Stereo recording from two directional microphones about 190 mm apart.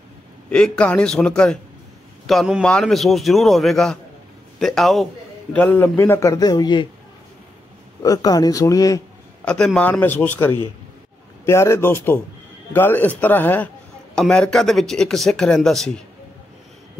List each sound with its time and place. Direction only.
0.5 s a man's voice: 5° left (ahead or behind); by 6.9 s 25° left (ahead or behind)
8.0 s speech: 20° left (ahead or behind)
9.4 s a man's voice: 5° left (ahead or behind)